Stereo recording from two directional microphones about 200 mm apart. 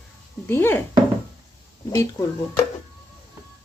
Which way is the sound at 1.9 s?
15° left (ahead or behind).